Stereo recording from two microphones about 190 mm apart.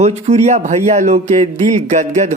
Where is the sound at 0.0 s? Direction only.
35° right (ahead or behind).